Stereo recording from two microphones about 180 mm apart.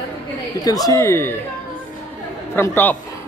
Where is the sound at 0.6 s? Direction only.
20° left (ahead or behind).